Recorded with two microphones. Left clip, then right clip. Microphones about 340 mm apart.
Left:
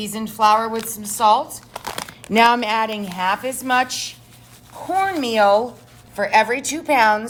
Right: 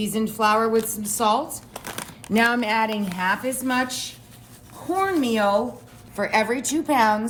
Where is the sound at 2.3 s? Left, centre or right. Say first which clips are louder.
Left 5 dB; centre.